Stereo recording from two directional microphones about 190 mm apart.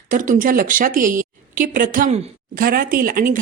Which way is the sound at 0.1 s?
45° right (ahead or behind).